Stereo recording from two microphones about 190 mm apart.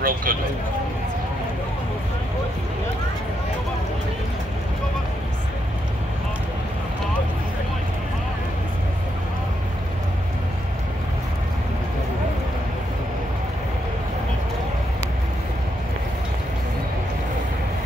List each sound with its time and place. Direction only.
0.0 s speech: 45° right (ahead or behind)